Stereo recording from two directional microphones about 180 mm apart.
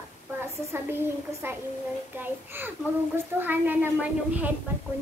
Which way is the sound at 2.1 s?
10° right (ahead or behind).